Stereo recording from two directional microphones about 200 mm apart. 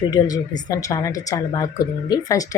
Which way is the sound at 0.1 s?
20° left (ahead or behind).